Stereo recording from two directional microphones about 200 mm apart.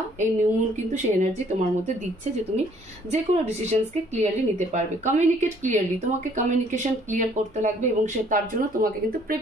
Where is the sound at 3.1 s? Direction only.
35° right (ahead or behind).